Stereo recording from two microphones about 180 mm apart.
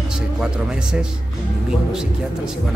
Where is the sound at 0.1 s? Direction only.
5° right (ahead or behind).